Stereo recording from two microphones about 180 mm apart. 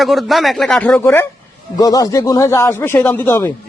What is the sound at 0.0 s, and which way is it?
A man's voice, centre (ahead or behind).